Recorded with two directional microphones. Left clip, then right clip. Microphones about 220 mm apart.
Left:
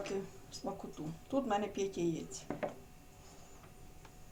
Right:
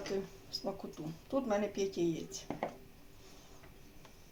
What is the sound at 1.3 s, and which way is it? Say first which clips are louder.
Speech: right 1 dB; 15° right (ahead or behind).